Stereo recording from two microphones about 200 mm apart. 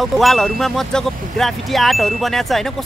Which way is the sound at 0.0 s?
Centre (ahead or behind).